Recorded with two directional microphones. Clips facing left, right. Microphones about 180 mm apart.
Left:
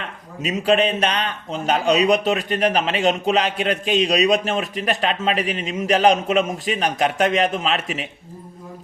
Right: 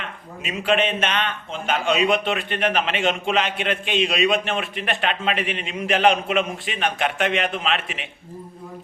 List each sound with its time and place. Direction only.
0.4 s a man's voice: 35° left (ahead or behind)